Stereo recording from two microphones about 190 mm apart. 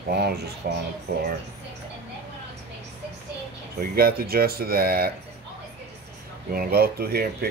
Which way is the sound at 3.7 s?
50° right (ahead or behind).